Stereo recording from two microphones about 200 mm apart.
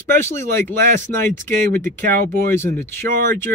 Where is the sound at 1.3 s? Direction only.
40° right (ahead or behind).